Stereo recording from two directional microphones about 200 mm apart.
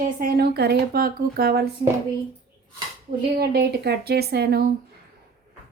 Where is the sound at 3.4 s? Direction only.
55° right (ahead or behind).